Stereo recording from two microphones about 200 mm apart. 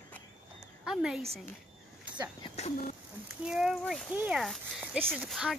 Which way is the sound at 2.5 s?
30° left (ahead or behind).